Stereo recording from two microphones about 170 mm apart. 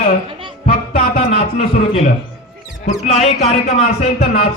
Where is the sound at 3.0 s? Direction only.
40° left (ahead or behind).